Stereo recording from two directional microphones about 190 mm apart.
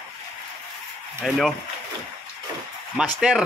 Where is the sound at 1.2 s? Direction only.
Centre (ahead or behind).